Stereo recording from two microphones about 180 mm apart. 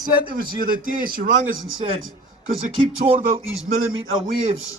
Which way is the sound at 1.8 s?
30° right (ahead or behind).